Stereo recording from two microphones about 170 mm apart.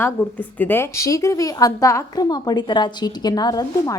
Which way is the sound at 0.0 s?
10° left (ahead or behind).